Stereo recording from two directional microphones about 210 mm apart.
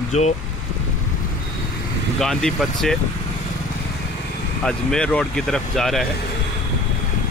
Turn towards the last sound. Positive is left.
turn(degrees=0)  # may be behind; listen again after turning